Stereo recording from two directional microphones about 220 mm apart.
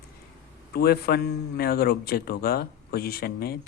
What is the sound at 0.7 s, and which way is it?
A man's voice, 45° left (ahead or behind).